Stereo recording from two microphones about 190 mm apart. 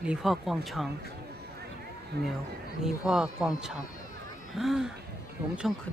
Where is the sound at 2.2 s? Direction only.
60° right (ahead or behind).